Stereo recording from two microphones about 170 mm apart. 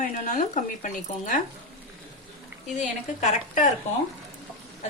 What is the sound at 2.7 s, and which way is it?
Speech, 45° left (ahead or behind).